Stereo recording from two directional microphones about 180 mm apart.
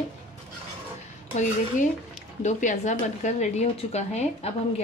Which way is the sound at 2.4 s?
40° left (ahead or behind).